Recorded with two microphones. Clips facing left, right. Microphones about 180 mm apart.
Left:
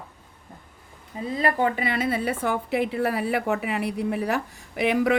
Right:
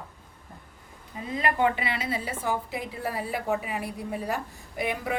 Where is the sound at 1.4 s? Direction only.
40° left (ahead or behind).